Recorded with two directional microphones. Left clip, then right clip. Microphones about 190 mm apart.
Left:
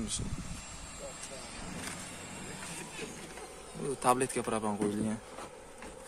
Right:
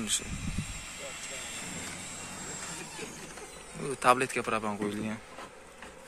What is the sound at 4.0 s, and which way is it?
Speech, 15° left (ahead or behind).